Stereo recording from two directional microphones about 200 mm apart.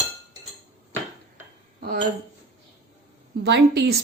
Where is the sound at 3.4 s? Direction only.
60° right (ahead or behind).